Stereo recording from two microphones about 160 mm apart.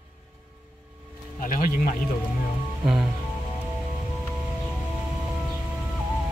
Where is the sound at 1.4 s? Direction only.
60° left (ahead or behind).